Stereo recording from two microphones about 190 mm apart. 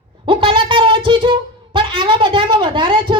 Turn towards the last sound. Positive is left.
turn(degrees=-25)  # may be behind; listen again after turning